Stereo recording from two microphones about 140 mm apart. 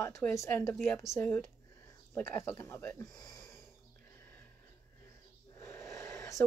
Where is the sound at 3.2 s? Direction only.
25° left (ahead or behind).